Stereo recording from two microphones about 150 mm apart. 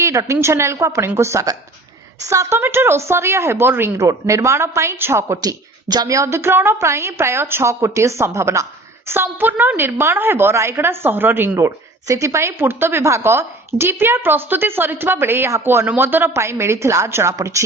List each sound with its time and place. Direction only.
0.0 s a woman's voice: 20° right (ahead or behind)